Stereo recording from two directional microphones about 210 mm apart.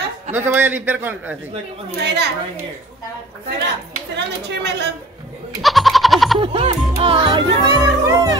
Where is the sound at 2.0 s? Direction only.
55° right (ahead or behind).